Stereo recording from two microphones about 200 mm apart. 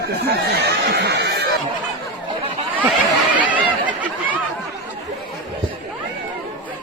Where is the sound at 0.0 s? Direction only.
55° right (ahead or behind).